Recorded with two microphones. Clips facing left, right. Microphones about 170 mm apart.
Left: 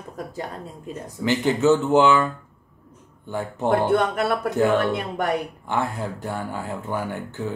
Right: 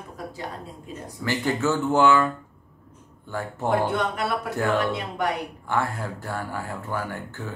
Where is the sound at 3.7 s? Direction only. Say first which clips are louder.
Left 4 dB; 50° left (ahead or behind).